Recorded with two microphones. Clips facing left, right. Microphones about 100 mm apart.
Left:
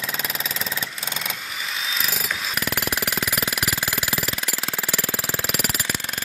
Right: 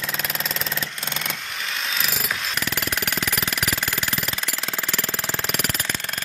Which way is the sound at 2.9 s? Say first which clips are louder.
Even; 5° left (ahead or behind).